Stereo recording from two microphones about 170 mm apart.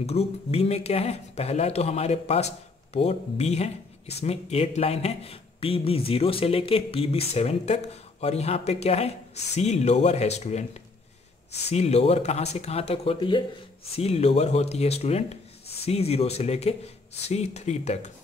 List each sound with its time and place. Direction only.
0.0 s speech: 35° left (ahead or behind)